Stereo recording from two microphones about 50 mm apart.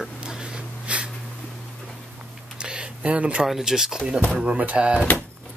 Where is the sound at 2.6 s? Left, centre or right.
Centre.